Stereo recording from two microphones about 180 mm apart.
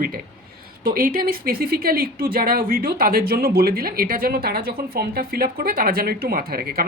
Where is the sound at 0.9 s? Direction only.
55° right (ahead or behind).